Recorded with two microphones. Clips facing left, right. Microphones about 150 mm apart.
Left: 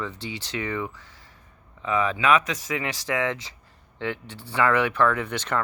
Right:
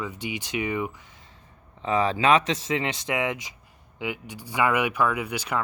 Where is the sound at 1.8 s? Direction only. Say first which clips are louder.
Right 1 dB; 35° right (ahead or behind).